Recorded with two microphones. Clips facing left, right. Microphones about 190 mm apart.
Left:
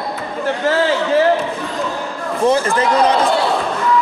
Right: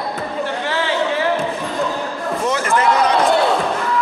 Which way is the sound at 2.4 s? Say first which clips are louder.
Left 5 dB; 30° left (ahead or behind).